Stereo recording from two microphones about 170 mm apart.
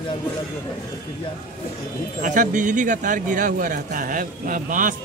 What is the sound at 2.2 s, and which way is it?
A man's voice, 50° right (ahead or behind).